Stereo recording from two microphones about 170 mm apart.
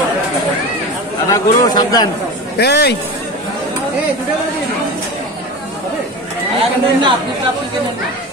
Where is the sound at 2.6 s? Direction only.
75° left (ahead or behind).